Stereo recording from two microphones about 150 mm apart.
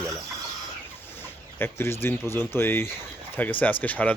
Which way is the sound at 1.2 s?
15° left (ahead or behind).